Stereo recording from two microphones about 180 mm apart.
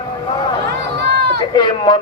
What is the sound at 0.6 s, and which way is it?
Crowd, 70° right (ahead or behind).